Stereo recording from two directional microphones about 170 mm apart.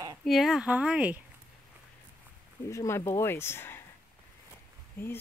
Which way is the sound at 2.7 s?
15° left (ahead or behind).